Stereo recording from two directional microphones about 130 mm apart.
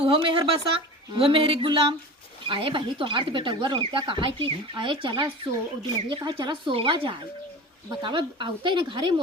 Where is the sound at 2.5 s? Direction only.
40° right (ahead or behind).